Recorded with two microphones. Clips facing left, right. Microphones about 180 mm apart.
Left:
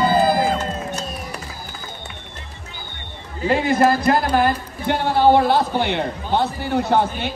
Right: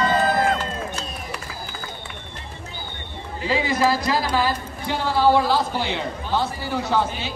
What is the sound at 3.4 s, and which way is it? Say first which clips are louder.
Speech: left 4 dB; 55° left (ahead or behind).